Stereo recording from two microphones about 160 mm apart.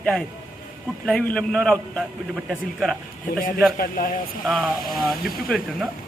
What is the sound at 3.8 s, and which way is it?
Speech, 60° left (ahead or behind).